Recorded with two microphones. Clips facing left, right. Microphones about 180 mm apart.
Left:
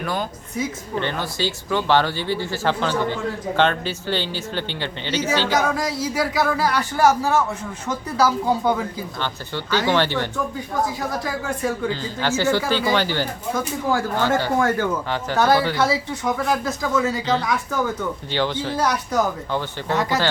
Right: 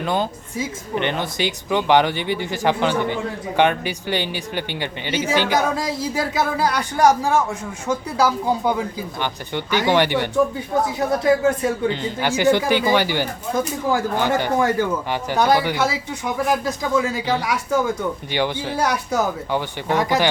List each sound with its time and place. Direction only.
0.0 s a woman's voice: 25° right (ahead or behind)